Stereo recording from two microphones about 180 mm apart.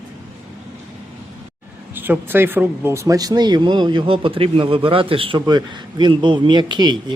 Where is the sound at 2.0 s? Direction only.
10° right (ahead or behind).